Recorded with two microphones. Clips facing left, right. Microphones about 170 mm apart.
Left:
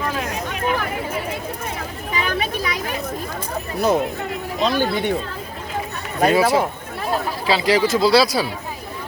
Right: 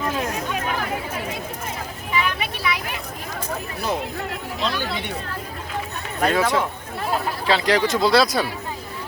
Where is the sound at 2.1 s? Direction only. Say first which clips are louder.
Left 2 dB; 40° left (ahead or behind).